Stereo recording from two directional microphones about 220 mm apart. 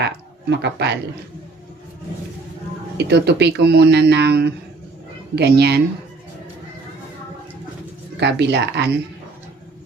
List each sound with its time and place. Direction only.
0.5 s speech: 50° right (ahead or behind)
3.0 s speech: 50° right (ahead or behind)
8.2 s speech: 50° right (ahead or behind)